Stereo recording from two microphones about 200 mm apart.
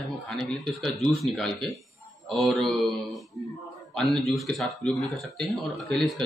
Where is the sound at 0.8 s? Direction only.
Centre (ahead or behind).